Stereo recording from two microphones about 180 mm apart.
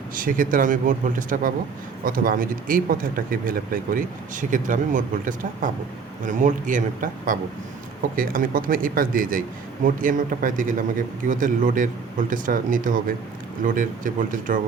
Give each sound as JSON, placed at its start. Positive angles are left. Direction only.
{"t": 0.1, "sound": "speech", "side_deg": -50}